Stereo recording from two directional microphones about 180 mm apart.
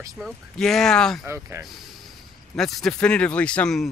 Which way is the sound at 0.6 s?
5° left (ahead or behind).